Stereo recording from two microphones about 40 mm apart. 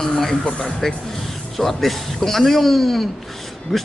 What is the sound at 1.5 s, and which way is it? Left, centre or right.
Speech, centre.